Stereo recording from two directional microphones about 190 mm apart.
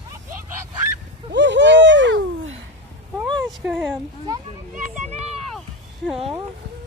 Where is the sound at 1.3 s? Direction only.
70° right (ahead or behind).